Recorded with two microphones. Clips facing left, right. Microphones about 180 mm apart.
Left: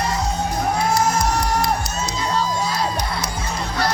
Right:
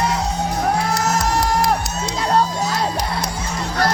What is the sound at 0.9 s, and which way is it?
Music, 80° right.